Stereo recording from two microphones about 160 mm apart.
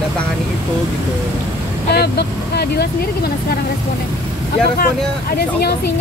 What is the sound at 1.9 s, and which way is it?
Speech, 90° left.